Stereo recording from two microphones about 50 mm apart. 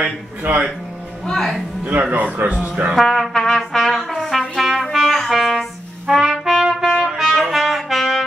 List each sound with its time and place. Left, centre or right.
0.4 s speech: right
1.3 s speech: centre
1.9 s speech: right
3.0 s trumpet: centre
6.2 s trumpet: centre